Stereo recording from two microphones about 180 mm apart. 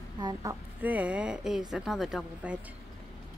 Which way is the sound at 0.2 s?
20° right (ahead or behind).